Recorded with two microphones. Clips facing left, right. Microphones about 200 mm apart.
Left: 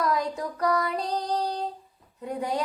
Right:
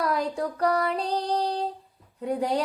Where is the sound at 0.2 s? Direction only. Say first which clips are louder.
Right 2 dB; 30° right (ahead or behind).